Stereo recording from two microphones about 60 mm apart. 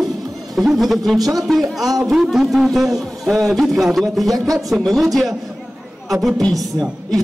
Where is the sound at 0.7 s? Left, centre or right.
Centre.